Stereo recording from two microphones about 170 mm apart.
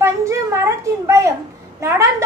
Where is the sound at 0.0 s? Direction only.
15° right (ahead or behind).